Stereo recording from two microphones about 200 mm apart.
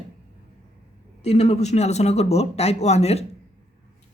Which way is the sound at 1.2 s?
30° left (ahead or behind).